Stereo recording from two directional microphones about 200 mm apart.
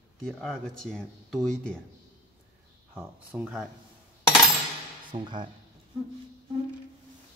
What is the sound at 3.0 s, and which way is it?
Speech, 5° right (ahead or behind).